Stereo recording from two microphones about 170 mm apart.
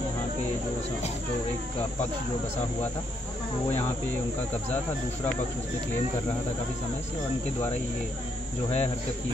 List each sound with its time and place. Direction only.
8.6 s speech: 40° left (ahead or behind)